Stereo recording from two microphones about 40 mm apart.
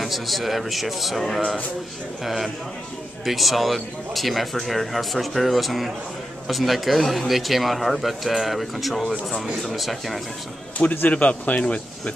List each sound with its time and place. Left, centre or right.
0.0 s speech: centre
2.2 s speech: centre
11.1 s speech: left